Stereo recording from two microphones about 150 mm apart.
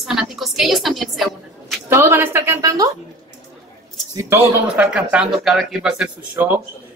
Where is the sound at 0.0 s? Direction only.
5° right (ahead or behind).